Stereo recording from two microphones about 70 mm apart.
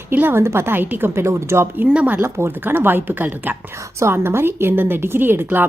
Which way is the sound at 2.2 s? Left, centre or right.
Right.